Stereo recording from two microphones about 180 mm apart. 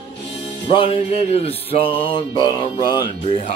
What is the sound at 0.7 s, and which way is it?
Mantra, 30° left (ahead or behind).